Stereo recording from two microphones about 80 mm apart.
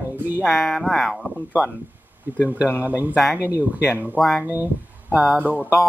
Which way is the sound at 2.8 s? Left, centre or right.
Right.